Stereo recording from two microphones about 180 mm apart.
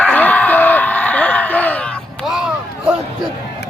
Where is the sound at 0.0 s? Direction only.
10° left (ahead or behind).